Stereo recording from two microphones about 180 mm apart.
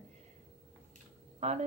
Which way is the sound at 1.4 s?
35° right (ahead or behind).